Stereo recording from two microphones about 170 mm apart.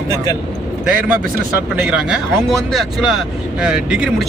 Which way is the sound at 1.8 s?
5° right (ahead or behind).